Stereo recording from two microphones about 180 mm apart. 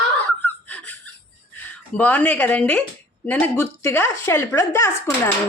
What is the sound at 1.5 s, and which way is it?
Speech, 10° left (ahead or behind).